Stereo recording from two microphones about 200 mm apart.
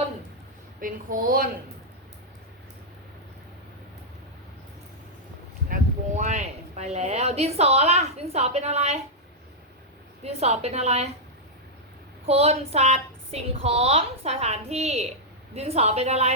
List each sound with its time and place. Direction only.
0.8 s a woman's voice: 45° right (ahead or behind)
5.6 s speech: 40° right (ahead or behind)
10.2 s a woman's voice: 30° right (ahead or behind)
12.2 s a woman's voice: 30° right (ahead or behind)